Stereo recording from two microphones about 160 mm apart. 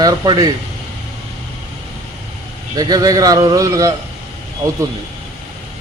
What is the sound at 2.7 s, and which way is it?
Speech, 25° right (ahead or behind).